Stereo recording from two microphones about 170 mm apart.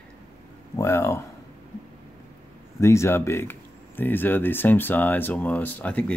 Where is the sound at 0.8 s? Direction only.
15° left (ahead or behind).